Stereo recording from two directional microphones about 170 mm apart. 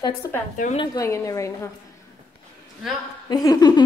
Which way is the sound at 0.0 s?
15° left (ahead or behind).